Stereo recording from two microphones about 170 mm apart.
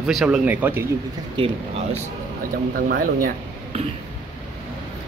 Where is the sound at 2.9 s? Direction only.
55° right (ahead or behind).